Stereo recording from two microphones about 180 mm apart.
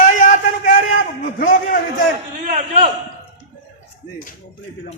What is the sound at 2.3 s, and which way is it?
Speech, 45° right (ahead or behind).